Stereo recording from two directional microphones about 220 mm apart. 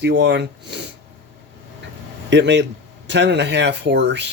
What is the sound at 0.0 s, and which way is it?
Speech, 50° right (ahead or behind).